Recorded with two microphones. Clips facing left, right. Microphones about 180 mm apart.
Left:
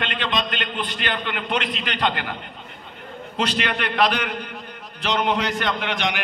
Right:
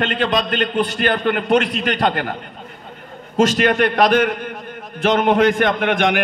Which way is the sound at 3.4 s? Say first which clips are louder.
Right 10 dB; 45° right (ahead or behind).